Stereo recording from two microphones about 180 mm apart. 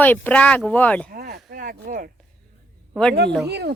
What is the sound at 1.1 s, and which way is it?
Speech, 55° right (ahead or behind).